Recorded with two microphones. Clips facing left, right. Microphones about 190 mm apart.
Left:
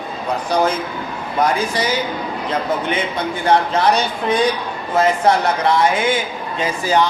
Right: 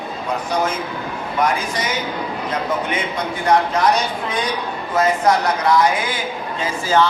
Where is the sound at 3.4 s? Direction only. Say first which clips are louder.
Left 1 dB; 30° left (ahead or behind).